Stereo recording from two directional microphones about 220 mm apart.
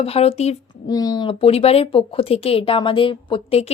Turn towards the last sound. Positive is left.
turn(degrees=30)  # may be behind; listen again after turning